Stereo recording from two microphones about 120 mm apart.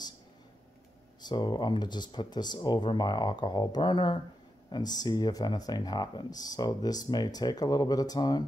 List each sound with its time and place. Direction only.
1.2 s speech: 40° left (ahead or behind)